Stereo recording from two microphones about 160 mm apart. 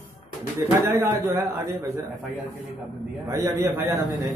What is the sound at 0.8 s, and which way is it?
Speech, 20° right (ahead or behind).